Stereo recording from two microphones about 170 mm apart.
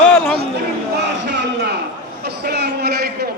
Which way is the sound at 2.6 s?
70° right (ahead or behind).